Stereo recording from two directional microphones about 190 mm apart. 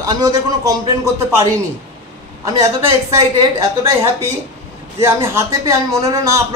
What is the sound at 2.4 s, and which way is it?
Speech, 15° right (ahead or behind).